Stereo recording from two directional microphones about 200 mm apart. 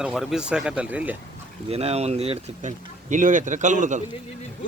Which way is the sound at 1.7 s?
30° right (ahead or behind).